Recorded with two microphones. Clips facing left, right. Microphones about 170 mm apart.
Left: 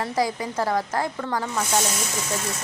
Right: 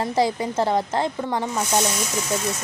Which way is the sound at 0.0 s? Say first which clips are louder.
Right 3 dB; 25° right (ahead or behind).